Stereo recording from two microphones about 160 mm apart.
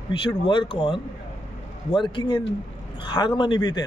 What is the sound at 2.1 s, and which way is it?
Speech, 30° left (ahead or behind).